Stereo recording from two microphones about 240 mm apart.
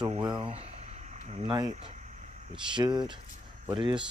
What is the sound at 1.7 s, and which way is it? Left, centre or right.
Speech, right.